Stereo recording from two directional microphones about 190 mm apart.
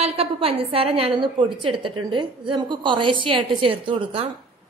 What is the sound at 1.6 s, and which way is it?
A woman's voice, 25° right (ahead or behind).